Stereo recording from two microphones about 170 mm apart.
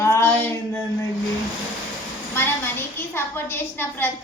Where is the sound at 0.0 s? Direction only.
15° left (ahead or behind).